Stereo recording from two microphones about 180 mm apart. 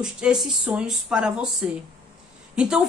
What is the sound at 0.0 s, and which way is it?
A woman's voice, 5° right (ahead or behind).